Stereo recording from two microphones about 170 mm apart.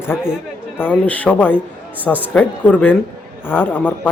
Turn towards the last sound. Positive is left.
turn(degrees=10)  # may be behind; listen again after turning